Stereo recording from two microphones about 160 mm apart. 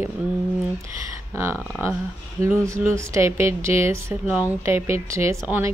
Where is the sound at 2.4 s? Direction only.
15° right (ahead or behind).